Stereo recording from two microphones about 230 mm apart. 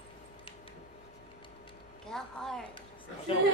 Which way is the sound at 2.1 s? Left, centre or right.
Centre.